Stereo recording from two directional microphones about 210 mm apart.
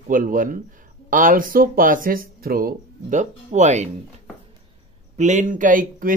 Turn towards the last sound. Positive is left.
turn(degrees=-40)  # may be behind; listen again after turning